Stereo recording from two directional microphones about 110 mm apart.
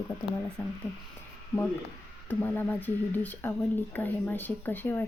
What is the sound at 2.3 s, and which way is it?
A woman's voice, 15° left (ahead or behind).